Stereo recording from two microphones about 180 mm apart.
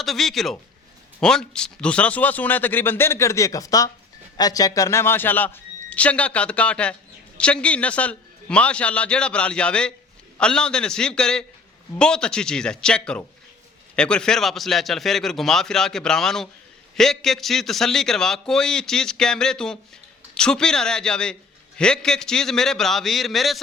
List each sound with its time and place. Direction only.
0.0 s a man's voice: centre (ahead or behind)